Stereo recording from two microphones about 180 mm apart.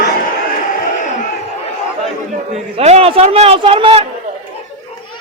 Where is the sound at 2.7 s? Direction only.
35° right (ahead or behind).